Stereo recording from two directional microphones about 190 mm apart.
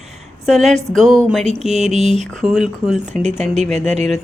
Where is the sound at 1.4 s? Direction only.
35° right (ahead or behind).